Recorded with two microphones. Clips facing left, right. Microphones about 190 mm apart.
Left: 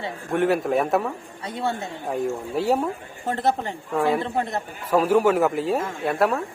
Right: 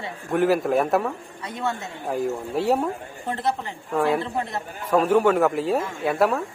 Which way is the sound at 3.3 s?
45° left (ahead or behind).